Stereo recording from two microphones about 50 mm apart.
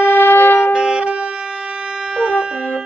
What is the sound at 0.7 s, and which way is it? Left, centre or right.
Saxophone, centre.